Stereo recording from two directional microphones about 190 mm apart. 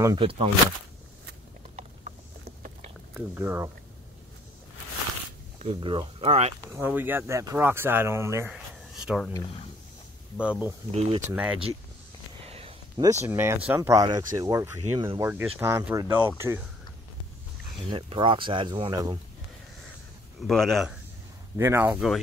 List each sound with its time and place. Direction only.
0.0 s speech: 25° right (ahead or behind)
1.8 s a sound: 40° right (ahead or behind)
3.2 s speech: 10° right (ahead or behind)
5.6 s speech: 30° right (ahead or behind)
6.7 s speech: 10° right (ahead or behind)
8.9 s a sound: centre (ahead or behind)
10.4 s speech: 5° right (ahead or behind)
10.9 s speech: 35° right (ahead or behind)
11.2 s speech: 10° right (ahead or behind)
12.4 s a sound: 30° right (ahead or behind)
13.2 s speech: 15° right (ahead or behind)
17.8 s speech: 25° right (ahead or behind)
20.3 s a man's voice: centre (ahead or behind)
21.5 s speech: 15° right (ahead or behind)